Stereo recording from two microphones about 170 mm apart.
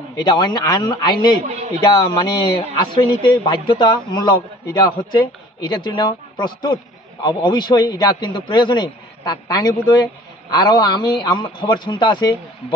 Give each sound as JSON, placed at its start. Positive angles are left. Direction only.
{"t": 0.1, "sound": "a man's voice", "side_deg": 25}